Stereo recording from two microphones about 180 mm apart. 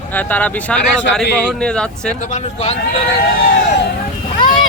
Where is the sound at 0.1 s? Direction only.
10° left (ahead or behind).